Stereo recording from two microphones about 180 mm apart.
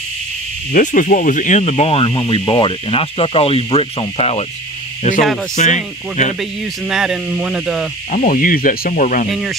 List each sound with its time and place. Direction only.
0.7 s speech: 45° left (ahead or behind)
6.6 s speech: centre (ahead or behind)
8.1 s speech: 50° left (ahead or behind)
9.3 s speech: centre (ahead or behind)